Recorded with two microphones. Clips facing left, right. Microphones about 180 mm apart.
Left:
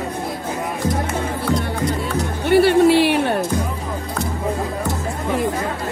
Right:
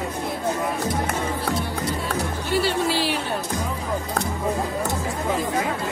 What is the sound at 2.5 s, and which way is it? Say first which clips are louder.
Music: left 10 dB; 60° left (ahead or behind).